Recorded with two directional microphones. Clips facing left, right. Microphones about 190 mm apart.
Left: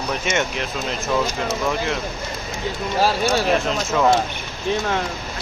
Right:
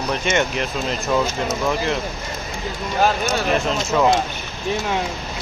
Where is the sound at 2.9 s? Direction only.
30° left (ahead or behind).